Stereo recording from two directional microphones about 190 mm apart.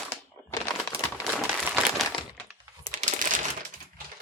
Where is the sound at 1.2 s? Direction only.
10° right (ahead or behind).